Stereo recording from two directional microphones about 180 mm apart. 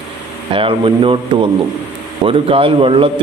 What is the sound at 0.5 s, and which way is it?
A man's voice, 30° right (ahead or behind).